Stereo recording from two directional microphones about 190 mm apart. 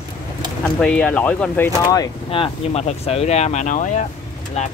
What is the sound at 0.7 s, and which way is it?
Speech, 5° left (ahead or behind).